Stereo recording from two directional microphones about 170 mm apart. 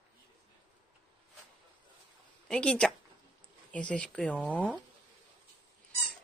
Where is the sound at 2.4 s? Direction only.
5° left (ahead or behind).